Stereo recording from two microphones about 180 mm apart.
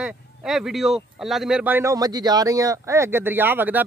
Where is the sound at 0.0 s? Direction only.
5° right (ahead or behind).